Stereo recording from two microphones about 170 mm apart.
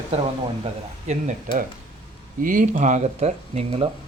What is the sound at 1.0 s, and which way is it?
Speech, 45° right (ahead or behind).